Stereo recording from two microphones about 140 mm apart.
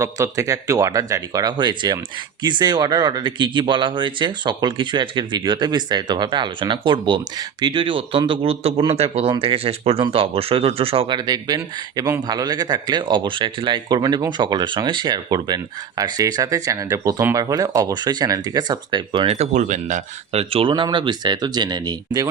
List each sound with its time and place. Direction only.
0.0 s speech: 20° right (ahead or behind); by 11.2 s 40° right (ahead or behind)
11.2 s speech: 30° right (ahead or behind)
19.3 s speech: 55° right (ahead or behind); by 22.3 s 30° right (ahead or behind)